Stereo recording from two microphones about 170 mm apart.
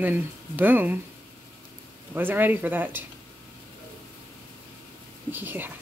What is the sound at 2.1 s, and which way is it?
Speech, 10° right (ahead or behind).